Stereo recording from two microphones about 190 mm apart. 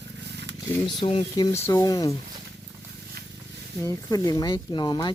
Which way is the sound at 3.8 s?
20° left (ahead or behind).